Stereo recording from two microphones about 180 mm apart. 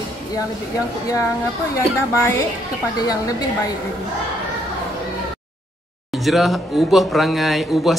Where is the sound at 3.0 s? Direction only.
20° left (ahead or behind).